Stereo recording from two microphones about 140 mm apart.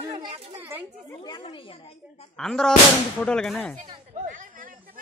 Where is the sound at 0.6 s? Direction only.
15° right (ahead or behind).